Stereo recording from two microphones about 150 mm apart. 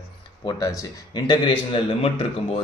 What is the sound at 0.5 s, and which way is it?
A man's voice, 25° left (ahead or behind).